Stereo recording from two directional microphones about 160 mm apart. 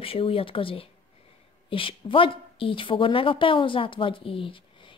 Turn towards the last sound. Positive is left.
turn(degrees=35)  # may be behind; listen again after turning